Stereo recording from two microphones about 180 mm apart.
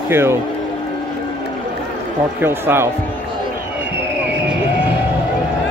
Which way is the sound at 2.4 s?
15° right (ahead or behind).